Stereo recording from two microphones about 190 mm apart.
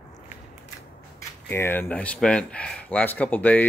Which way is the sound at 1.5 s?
10° left (ahead or behind).